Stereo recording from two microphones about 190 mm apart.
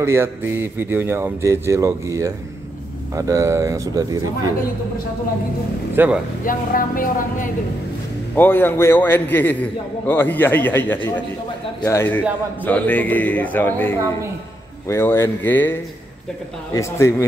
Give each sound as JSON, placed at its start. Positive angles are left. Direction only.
{"t": 0.0, "sound": "speech", "side_deg": -15}
{"t": 5.9, "sound": "speech", "side_deg": -10}
{"t": 6.4, "sound": "speech", "side_deg": 45}
{"t": 8.4, "sound": "a man's voice", "side_deg": 10}